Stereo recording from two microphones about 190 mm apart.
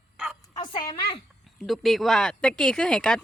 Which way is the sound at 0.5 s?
25° left (ahead or behind).